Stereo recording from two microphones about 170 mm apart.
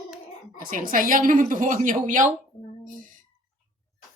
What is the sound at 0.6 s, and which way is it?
A woman's voice, 55° right (ahead or behind).